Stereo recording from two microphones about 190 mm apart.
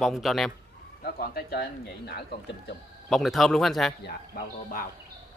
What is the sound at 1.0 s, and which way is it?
Speech, 55° left (ahead or behind).